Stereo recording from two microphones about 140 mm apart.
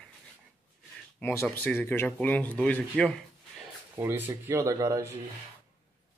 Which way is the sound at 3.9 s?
15° right (ahead or behind).